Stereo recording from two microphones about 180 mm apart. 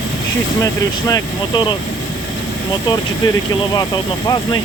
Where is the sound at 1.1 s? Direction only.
25° left (ahead or behind).